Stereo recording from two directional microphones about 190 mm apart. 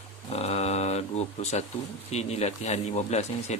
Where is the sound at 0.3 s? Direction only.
35° left (ahead or behind).